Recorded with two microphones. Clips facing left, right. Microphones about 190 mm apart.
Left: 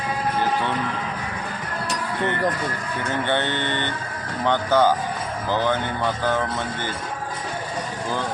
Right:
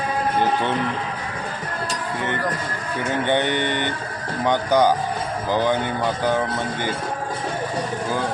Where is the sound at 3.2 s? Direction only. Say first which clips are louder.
Right 4 dB; 15° right (ahead or behind).